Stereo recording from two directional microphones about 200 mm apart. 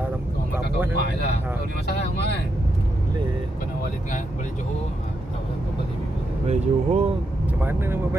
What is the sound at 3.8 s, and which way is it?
Speech, 40° left (ahead or behind).